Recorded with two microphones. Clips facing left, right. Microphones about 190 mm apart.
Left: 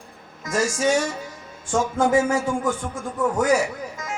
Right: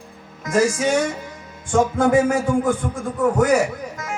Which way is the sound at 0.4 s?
60° right (ahead or behind).